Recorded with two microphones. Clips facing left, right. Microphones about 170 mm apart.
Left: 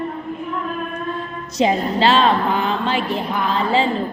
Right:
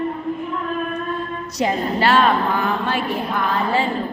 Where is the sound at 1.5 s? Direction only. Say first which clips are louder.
Left 3 dB; 20° left (ahead or behind).